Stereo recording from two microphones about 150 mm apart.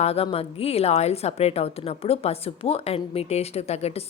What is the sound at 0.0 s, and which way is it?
A woman's voice, 40° left (ahead or behind).